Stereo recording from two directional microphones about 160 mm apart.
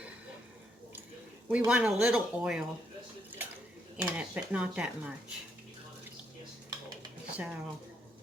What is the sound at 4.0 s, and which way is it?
Speech, 10° right (ahead or behind).